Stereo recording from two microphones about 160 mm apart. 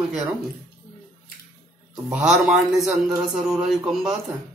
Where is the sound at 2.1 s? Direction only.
5° right (ahead or behind).